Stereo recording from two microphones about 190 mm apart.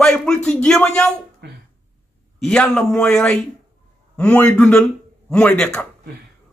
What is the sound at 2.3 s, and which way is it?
A man's voice, 5° left (ahead or behind).